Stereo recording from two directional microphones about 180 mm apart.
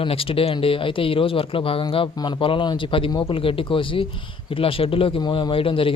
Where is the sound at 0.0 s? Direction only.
30° left (ahead or behind).